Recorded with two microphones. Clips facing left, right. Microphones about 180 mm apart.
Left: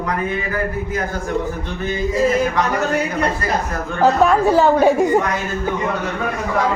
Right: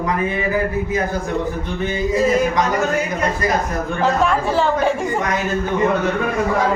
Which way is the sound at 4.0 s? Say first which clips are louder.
Left 5 dB; 40° left (ahead or behind).